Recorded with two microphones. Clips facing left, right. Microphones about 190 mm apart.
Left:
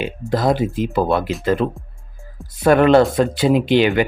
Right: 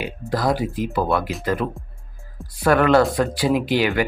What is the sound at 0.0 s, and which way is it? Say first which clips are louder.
Speech: left 4 dB; 25° left (ahead or behind).